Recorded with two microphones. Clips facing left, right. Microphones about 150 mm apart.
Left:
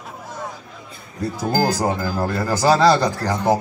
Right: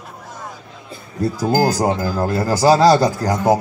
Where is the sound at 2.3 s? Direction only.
35° right (ahead or behind).